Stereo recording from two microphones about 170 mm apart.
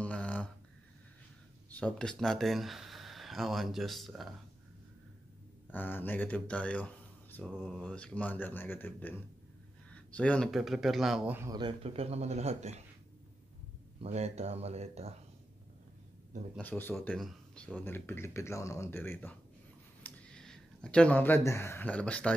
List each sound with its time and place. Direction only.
0.0 s a sound: 10° left (ahead or behind)
1.7 s speech: 5° left (ahead or behind)
5.7 s a man's voice: 10° left (ahead or behind); by 11.4 s 5° right (ahead or behind)
11.4 s speech: 25° right (ahead or behind)
11.8 s speech: 35° right (ahead or behind)
14.0 s speech: 40° right (ahead or behind)
16.5 s speech: 10° left (ahead or behind)